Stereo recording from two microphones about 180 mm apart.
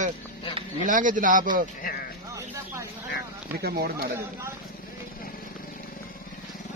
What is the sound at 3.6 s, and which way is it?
Speech, 60° right (ahead or behind).